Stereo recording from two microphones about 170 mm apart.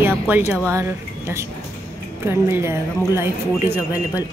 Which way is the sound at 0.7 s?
15° right (ahead or behind).